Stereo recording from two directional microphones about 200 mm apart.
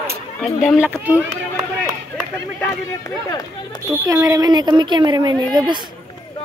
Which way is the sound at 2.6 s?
15° left (ahead or behind).